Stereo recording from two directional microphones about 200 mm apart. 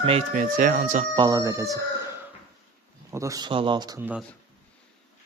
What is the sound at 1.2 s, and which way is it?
Speech, 20° right (ahead or behind).